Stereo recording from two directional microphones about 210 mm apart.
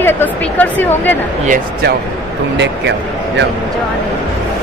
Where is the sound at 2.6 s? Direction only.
55° right (ahead or behind).